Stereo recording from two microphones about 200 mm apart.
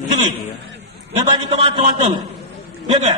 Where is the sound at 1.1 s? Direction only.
30° right (ahead or behind).